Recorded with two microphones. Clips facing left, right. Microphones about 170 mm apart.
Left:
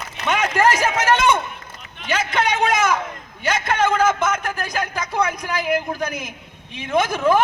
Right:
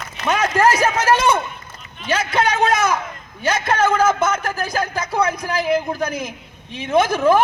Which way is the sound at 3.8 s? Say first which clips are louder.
Right 1 dB; 5° right (ahead or behind).